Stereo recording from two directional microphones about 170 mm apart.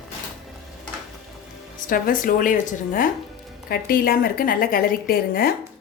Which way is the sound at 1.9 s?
55° left (ahead or behind).